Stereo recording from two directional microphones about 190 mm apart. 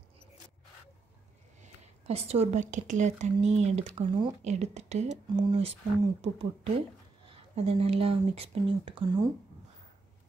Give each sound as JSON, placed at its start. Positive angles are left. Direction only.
{"t": 2.0, "sound": "speech", "side_deg": -30}